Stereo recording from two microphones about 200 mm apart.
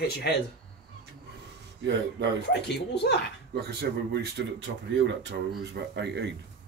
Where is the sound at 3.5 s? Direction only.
55° right (ahead or behind).